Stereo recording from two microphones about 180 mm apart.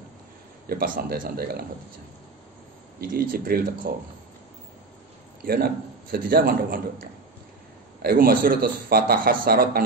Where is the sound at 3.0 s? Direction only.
50° right (ahead or behind).